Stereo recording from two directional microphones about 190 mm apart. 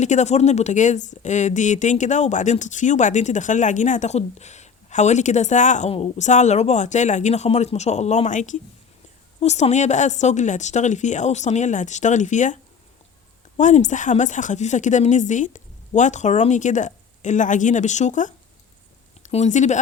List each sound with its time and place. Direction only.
0.0 s a woman's voice: 40° left (ahead or behind)
13.6 s a woman's voice: 40° left (ahead or behind)